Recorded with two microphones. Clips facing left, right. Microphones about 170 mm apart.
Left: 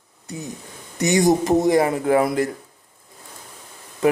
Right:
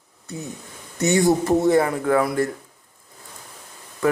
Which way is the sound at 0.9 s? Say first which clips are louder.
Left 1 dB; 15° left (ahead or behind).